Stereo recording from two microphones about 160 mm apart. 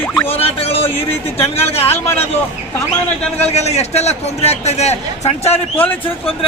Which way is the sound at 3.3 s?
40° left (ahead or behind).